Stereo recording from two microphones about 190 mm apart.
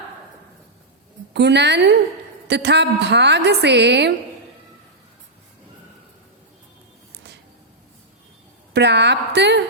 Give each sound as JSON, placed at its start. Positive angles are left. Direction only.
{"t": 1.3, "sound": "a woman's voice", "side_deg": -65}
{"t": 8.7, "sound": "a woman's voice", "side_deg": -65}